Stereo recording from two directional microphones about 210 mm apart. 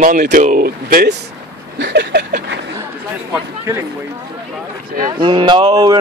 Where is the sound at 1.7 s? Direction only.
60° right (ahead or behind).